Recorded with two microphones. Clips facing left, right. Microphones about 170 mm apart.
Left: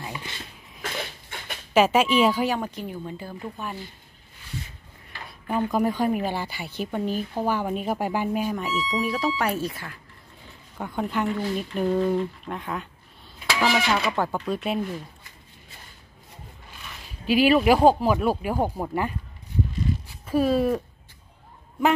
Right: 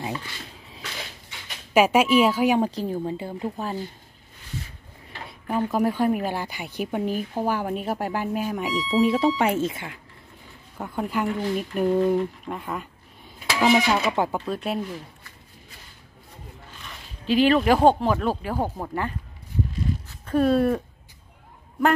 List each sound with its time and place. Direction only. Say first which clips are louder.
0.8 s a sound: left 6 dB; 55° left (ahead or behind)
1.7 s speech: right 1 dB; 10° right (ahead or behind)
2.6 s speech: right 7 dB; 35° right (ahead or behind)
5.5 s speech: even; 5° right (ahead or behind)
8.5 s speech: right 5 dB; 15° right (ahead or behind)
10.8 s speech: even; 5° right (ahead or behind)
13.6 s speech: right 4 dB; 15° right (ahead or behind)
17.3 s speech: even; 10° left (ahead or behind)